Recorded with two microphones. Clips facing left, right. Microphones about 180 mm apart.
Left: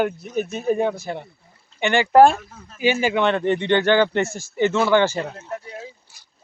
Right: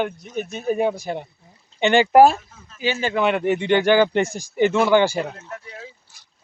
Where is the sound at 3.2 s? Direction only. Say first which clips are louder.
Even; 10° right (ahead or behind).